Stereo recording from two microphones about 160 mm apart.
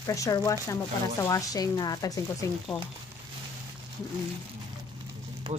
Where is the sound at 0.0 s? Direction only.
20° left (ahead or behind).